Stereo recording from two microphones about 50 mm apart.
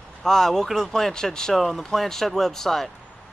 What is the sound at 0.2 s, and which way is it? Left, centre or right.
Speech, centre.